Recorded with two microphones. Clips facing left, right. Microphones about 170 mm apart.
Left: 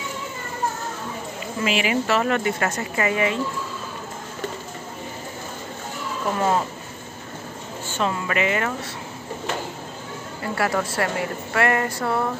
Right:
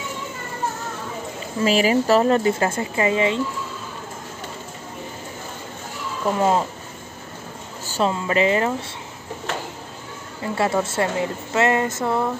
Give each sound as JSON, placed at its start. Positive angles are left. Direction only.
{"t": 1.6, "sound": "speech", "side_deg": -35}
{"t": 6.3, "sound": "a woman's voice", "side_deg": -20}
{"t": 7.8, "sound": "a sound", "side_deg": -35}
{"t": 8.1, "sound": "a woman's voice", "side_deg": -30}
{"t": 10.4, "sound": "a woman's voice", "side_deg": -25}